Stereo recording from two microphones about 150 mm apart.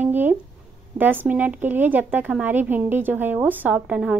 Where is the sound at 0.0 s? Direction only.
10° right (ahead or behind).